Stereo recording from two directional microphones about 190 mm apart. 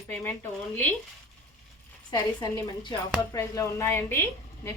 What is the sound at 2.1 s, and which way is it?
A woman's voice, 25° left (ahead or behind).